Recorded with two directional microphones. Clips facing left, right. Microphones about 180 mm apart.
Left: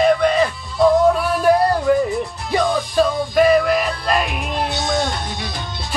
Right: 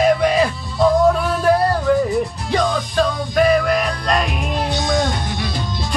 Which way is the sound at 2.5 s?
5° left (ahead or behind).